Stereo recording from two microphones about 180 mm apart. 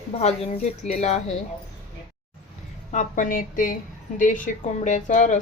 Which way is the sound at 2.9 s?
45° left (ahead or behind).